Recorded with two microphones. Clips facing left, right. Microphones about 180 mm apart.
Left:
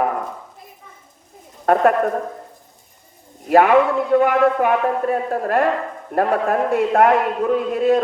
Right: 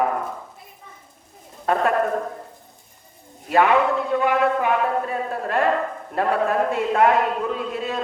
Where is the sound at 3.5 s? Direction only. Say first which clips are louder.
Left 4 dB; 50° left (ahead or behind).